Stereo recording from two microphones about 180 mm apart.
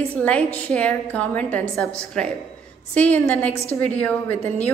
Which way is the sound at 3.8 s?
5° left (ahead or behind).